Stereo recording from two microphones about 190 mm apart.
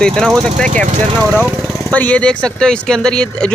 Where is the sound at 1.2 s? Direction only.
10° right (ahead or behind).